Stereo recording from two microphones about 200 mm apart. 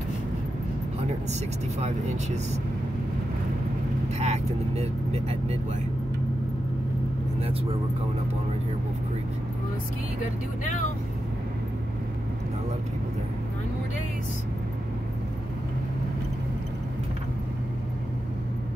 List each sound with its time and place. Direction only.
1.8 s speech: 35° right (ahead or behind)
4.2 s speech: 30° right (ahead or behind)